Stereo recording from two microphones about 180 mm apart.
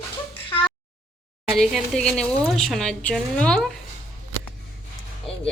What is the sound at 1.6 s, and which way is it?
A woman's voice, centre (ahead or behind).